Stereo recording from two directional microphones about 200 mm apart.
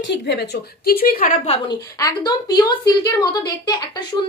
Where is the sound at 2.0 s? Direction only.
20° left (ahead or behind).